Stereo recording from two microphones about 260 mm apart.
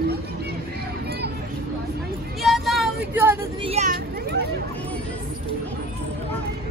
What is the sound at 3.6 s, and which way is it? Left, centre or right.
Vehicle, right.